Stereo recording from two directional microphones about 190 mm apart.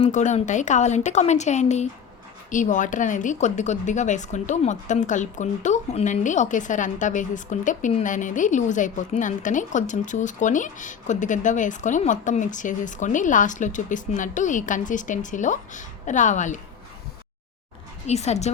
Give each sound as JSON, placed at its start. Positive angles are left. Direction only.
{"t": 0.0, "sound": "speech", "side_deg": 40}
{"t": 18.0, "sound": "speech", "side_deg": 35}